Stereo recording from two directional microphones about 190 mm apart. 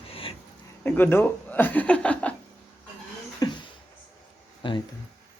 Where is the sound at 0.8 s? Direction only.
10° left (ahead or behind).